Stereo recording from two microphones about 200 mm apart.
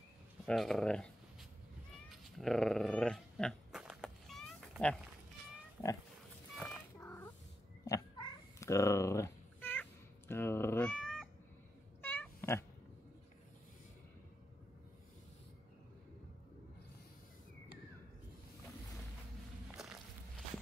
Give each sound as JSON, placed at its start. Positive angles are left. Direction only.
{"t": 0.5, "sound": "speech", "side_deg": 0}
{"t": 2.0, "sound": "dog", "side_deg": 0}
{"t": 6.5, "sound": "a sound", "side_deg": 10}
{"t": 7.8, "sound": "cat", "side_deg": 15}
{"t": 19.7, "sound": "walk", "side_deg": 0}